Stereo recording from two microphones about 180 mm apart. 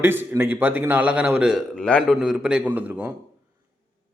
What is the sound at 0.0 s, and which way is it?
A man's voice, 10° right (ahead or behind).